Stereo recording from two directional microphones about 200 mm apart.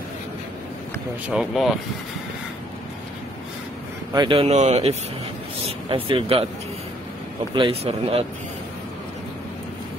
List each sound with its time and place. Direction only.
1.3 s speech: centre (ahead or behind)
4.1 s speech: 25° right (ahead or behind)
7.5 s speech: 25° right (ahead or behind)